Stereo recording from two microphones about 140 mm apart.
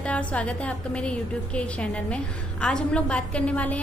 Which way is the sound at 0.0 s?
10° left (ahead or behind).